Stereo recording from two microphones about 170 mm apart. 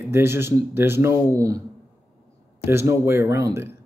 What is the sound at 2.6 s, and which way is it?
Speech, 15° right (ahead or behind).